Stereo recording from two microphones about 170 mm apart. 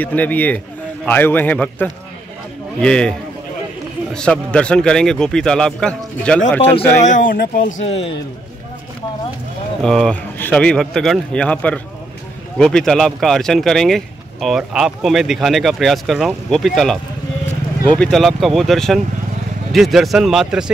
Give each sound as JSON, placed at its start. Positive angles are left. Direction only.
{"t": 0.0, "sound": "a man's voice", "side_deg": 10}
{"t": 6.7, "sound": "a man's voice", "side_deg": 45}
{"t": 9.8, "sound": "speech", "side_deg": 5}